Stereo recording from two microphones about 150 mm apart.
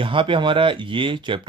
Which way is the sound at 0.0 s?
35° right (ahead or behind).